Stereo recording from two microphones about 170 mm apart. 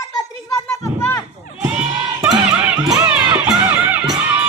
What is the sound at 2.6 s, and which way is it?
Music, 5° right (ahead or behind).